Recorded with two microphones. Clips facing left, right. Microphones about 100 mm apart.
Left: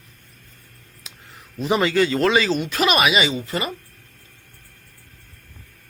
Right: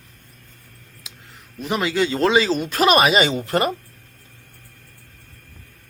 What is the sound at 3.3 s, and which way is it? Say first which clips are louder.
Speech: right 5 dB; 60° right (ahead or behind).